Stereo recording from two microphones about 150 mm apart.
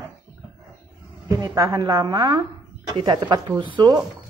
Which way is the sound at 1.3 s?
25° right (ahead or behind).